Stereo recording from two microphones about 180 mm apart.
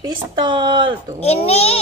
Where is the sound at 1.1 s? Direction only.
35° left (ahead or behind).